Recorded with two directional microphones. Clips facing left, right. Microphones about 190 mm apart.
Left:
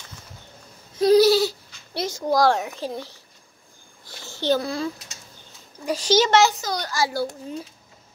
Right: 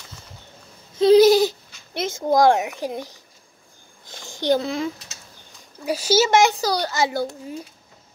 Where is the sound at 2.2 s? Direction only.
20° right (ahead or behind).